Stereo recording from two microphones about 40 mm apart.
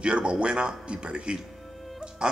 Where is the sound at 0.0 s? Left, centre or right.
Right.